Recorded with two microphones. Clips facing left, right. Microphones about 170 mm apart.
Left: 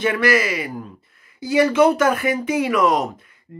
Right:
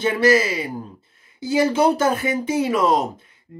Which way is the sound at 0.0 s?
30° right (ahead or behind).